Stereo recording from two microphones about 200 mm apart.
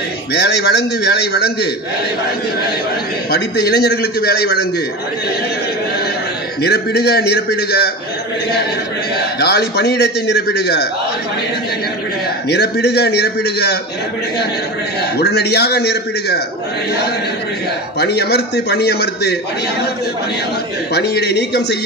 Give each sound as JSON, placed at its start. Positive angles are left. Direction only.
{"t": 0.3, "sound": "a man's voice", "side_deg": 55}
{"t": 3.3, "sound": "a man's voice", "side_deg": 55}
{"t": 6.6, "sound": "a man's voice", "side_deg": 55}
{"t": 9.4, "sound": "a man's voice", "side_deg": 55}
{"t": 12.4, "sound": "a man's voice", "side_deg": 55}
{"t": 15.1, "sound": "a man's voice", "side_deg": 55}
{"t": 17.9, "sound": "a man's voice", "side_deg": 55}
{"t": 20.9, "sound": "a man's voice", "side_deg": 55}